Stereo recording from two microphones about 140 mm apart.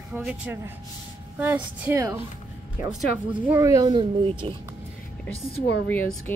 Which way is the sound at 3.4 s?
20° right (ahead or behind).